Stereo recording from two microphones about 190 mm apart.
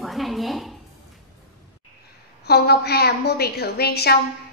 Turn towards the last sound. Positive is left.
turn(degrees=55)  # may be behind; listen again after turning